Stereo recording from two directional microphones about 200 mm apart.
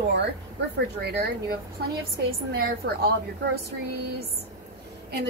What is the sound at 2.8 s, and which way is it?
Speech, 55° right (ahead or behind).